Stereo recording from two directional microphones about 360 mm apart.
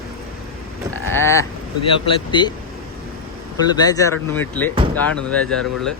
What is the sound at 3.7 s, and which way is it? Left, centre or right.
Speech, centre.